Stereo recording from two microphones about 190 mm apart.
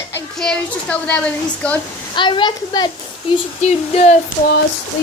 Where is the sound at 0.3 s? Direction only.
5° left (ahead or behind).